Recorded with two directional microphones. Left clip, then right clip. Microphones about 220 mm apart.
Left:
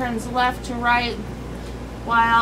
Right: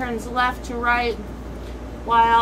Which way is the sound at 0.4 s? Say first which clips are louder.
Left 1 dB; 25° left (ahead or behind).